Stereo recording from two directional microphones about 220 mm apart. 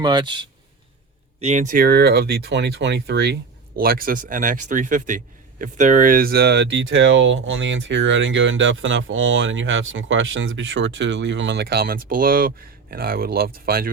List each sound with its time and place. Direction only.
0.0 s speech: 20° right (ahead or behind)
1.4 s a man's voice: 30° right (ahead or behind)